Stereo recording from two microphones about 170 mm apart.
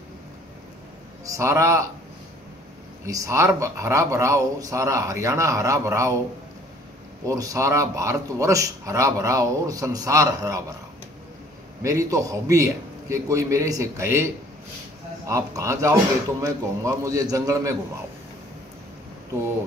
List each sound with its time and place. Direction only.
1.2 s speech: 20° right (ahead or behind)
3.1 s speech: 20° right (ahead or behind)
7.2 s speech: 20° right (ahead or behind)
11.8 s speech: 20° right (ahead or behind)